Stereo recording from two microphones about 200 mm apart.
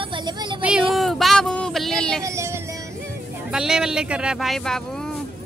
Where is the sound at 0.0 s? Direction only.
25° right (ahead or behind).